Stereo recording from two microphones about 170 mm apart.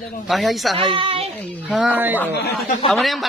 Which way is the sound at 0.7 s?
30° right (ahead or behind).